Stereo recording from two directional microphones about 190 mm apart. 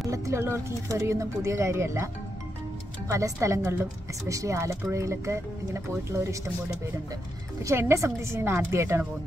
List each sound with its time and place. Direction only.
0.1 s speech: 15° right (ahead or behind)
3.1 s speech: 15° right (ahead or behind)
7.6 s speech: 15° right (ahead or behind)